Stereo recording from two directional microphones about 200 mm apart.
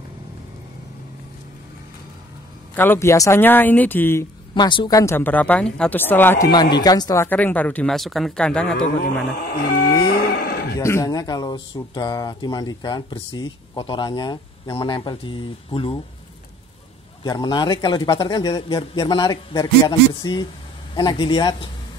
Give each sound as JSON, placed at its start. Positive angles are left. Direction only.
{"t": 2.7, "sound": "speech", "side_deg": 10}
{"t": 9.4, "sound": "livestock", "side_deg": 50}
{"t": 10.0, "sound": "cattle", "side_deg": 55}
{"t": 10.8, "sound": "speech", "side_deg": 15}
{"t": 17.2, "sound": "speech", "side_deg": 20}